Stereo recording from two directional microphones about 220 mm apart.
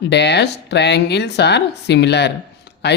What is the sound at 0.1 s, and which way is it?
Speech, 50° left (ahead or behind).